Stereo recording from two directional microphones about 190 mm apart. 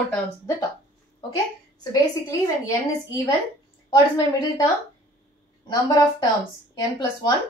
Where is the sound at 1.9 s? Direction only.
20° left (ahead or behind).